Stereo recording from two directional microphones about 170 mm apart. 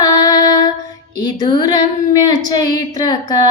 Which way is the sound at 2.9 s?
20° left (ahead or behind).